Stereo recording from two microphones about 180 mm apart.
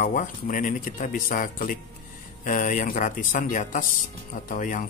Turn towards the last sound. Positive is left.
turn(degrees=50)  # may be behind; listen again after turning